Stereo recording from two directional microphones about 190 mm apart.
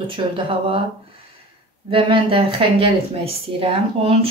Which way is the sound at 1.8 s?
25° right (ahead or behind).